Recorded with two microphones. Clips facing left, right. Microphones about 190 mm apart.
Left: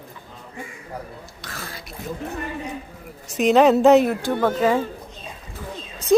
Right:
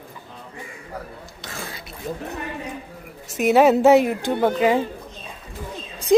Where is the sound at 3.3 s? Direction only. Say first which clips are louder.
Even; 5° right (ahead or behind).